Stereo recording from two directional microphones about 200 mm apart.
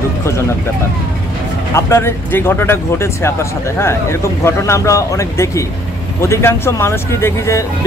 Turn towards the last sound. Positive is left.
turn(degrees=15)  # may be behind; listen again after turning